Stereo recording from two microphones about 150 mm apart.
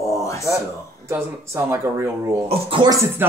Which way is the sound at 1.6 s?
15° right (ahead or behind).